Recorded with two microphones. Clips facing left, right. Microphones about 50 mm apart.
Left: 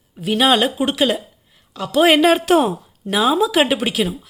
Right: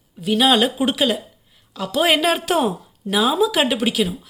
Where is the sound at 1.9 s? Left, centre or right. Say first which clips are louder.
Left 5 dB; centre.